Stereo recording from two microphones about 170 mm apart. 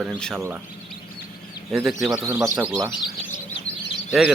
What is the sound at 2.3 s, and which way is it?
Speech, 15° right (ahead or behind).